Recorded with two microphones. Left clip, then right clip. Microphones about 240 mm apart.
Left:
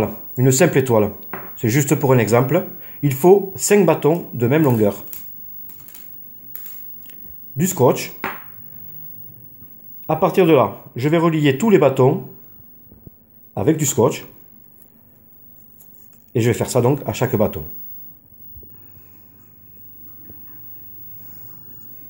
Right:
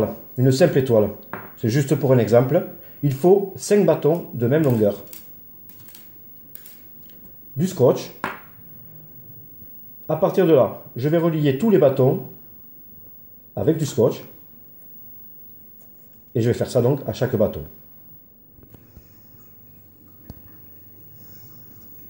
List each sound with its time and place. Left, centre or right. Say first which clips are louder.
0.0 s speech: left 2 dB; left
7.1 s a sound: left 2 dB; left
10.0 s speech: left 3 dB; left
13.6 s speech: left 2 dB; left
16.3 s speech: left 2 dB; left